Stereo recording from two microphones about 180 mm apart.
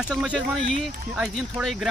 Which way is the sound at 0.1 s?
Centre (ahead or behind).